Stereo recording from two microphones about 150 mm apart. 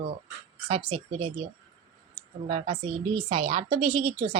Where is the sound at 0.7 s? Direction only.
40° right (ahead or behind).